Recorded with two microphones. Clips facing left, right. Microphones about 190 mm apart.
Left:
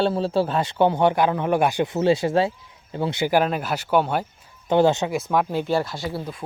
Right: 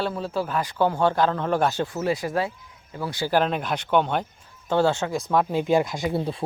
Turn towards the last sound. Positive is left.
turn(degrees=-30)  # may be behind; listen again after turning